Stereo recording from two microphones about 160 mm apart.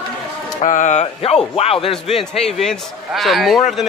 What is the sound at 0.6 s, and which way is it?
Speech, 50° left (ahead or behind).